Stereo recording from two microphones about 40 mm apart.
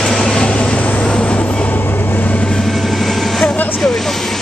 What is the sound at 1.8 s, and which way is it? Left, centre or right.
Vehicle, left.